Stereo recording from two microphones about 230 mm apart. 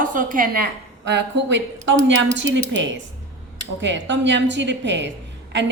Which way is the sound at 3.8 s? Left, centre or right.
Right.